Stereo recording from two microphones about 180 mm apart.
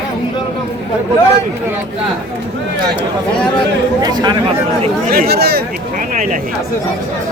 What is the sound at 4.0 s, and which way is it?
Speech, 25° right (ahead or behind).